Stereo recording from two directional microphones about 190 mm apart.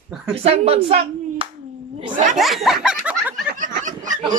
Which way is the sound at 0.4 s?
30° right (ahead or behind).